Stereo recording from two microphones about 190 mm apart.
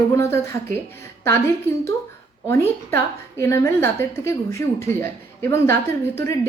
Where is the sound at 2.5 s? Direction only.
15° left (ahead or behind).